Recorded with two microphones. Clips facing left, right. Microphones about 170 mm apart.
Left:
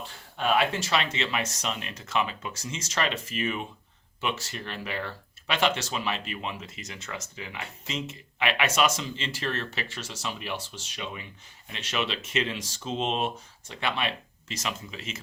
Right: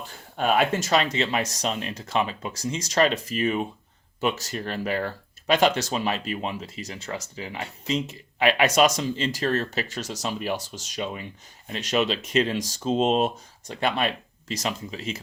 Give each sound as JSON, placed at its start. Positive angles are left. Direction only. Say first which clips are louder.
{"t": 0.3, "sound": "speech", "louder": "right 3 dB", "side_deg": -45}